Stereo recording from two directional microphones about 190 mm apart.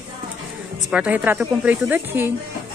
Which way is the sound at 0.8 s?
5° right (ahead or behind).